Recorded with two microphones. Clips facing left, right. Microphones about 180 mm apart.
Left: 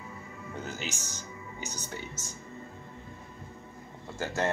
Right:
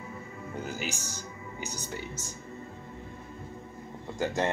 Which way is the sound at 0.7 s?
10° right (ahead or behind).